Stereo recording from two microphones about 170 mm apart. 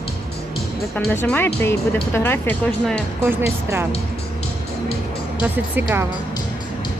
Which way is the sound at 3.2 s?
15° right (ahead or behind).